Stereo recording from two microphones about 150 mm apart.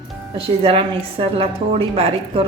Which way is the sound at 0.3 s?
40° right (ahead or behind).